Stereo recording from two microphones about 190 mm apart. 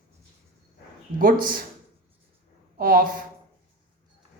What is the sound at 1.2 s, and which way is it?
Speech, 45° right (ahead or behind).